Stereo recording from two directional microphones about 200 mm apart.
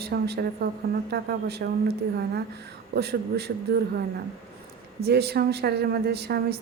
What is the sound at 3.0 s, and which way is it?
Speech, 55° right (ahead or behind).